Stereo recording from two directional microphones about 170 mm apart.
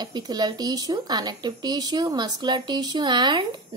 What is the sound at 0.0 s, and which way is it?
Speech, 25° right (ahead or behind).